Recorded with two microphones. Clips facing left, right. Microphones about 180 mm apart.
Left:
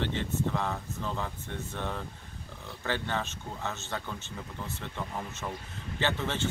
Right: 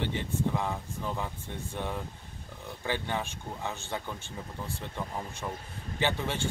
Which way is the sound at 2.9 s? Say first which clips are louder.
Even; 15° right (ahead or behind).